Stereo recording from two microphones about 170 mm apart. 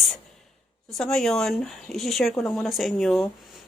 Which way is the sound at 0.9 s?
5° left (ahead or behind).